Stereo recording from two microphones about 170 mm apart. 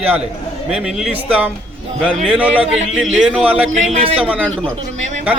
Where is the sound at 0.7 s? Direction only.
5° right (ahead or behind).